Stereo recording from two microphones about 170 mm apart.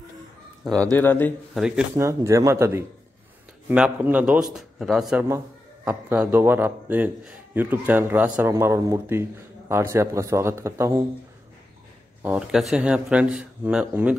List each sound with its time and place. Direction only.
0.7 s speech: 20° right (ahead or behind)
0.9 s a man's voice: 10° left (ahead or behind)
1.5 s speech: 5° right (ahead or behind)
2.0 s a man's voice: 15° right (ahead or behind)
12.2 s speech: 5° right (ahead or behind)